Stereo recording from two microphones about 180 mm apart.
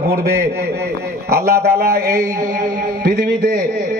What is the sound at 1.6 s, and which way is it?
Speech, 60° right (ahead or behind).